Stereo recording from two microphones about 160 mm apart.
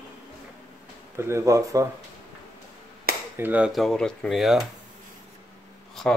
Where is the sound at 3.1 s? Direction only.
70° right (ahead or behind).